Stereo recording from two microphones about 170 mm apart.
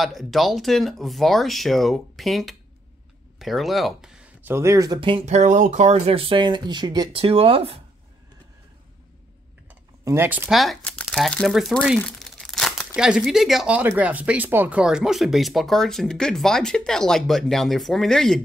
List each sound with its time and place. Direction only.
0.0 s speech: centre (ahead or behind); by 7.8 s 35° right (ahead or behind)
9.7 s a sound: 15° right (ahead or behind)
10.5 s speech: centre (ahead or behind)